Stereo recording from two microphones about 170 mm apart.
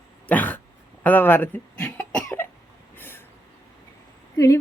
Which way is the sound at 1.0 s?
10° left (ahead or behind).